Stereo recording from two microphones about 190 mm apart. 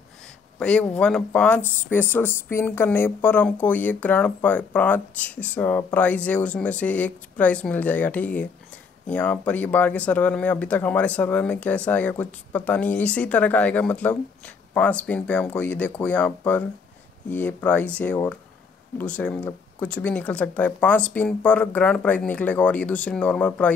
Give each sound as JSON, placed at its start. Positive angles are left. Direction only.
{"t": 0.6, "sound": "speech", "side_deg": 5}
{"t": 1.6, "sound": "speech", "side_deg": 45}
{"t": 1.9, "sound": "speech", "side_deg": 10}